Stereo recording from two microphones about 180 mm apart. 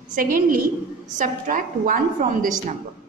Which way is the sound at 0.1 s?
50° right (ahead or behind).